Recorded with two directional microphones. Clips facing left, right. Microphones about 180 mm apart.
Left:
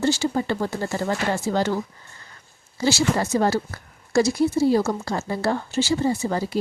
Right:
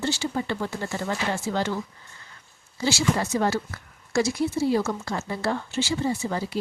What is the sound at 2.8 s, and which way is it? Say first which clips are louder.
Speech: left 3 dB; 40° left (ahead or behind).